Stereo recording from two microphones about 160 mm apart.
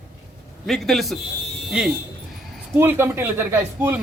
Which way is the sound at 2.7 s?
15° right (ahead or behind).